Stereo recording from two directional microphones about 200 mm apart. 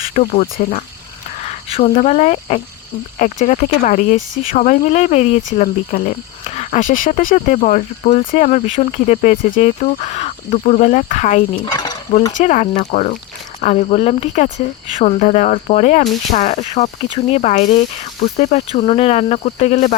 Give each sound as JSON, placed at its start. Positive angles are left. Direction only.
{"t": 0.1, "sound": "speech", "side_deg": 35}
{"t": 1.5, "sound": "speech", "side_deg": 30}